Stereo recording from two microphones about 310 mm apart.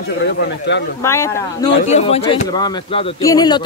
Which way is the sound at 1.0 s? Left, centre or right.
Centre.